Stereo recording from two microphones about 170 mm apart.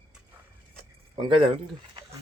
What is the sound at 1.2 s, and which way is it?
Speech, 30° right (ahead or behind).